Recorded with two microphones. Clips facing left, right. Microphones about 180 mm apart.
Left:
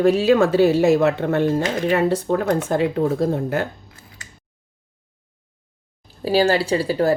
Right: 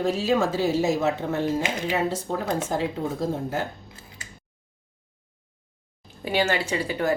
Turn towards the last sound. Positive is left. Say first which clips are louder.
# left 6 dB
turn(degrees=35)  # may be behind; listen again after turning